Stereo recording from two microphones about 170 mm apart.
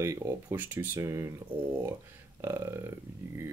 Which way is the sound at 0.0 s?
15° right (ahead or behind).